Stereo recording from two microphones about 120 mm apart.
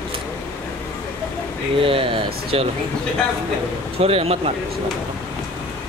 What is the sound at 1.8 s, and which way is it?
Speech, 50° right (ahead or behind).